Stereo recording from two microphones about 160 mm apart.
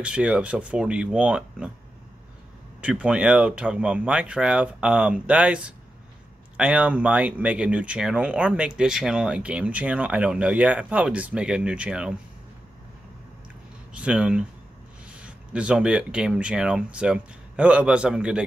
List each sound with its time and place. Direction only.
0.0 s speech: 5° right (ahead or behind)
2.8 s speech: 5° right (ahead or behind)
13.9 s speech: 5° right (ahead or behind)